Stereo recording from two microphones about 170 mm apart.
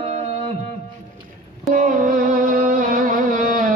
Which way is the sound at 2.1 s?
55° right (ahead or behind).